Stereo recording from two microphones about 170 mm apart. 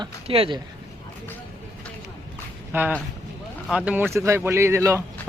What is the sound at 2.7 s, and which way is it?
Speech, 10° right (ahead or behind).